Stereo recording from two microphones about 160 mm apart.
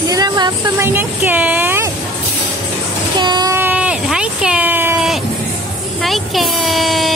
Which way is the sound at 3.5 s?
10° right (ahead or behind).